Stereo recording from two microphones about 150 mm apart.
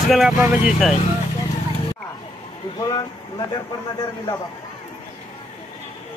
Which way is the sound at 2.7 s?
25° left (ahead or behind).